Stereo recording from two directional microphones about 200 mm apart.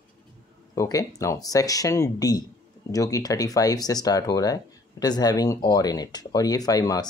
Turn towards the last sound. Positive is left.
turn(degrees=20)  # may be behind; listen again after turning